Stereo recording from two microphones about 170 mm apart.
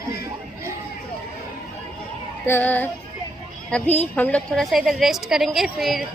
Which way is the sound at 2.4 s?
10° left (ahead or behind).